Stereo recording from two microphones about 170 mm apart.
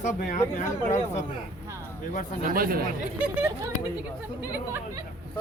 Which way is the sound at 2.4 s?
60° right (ahead or behind).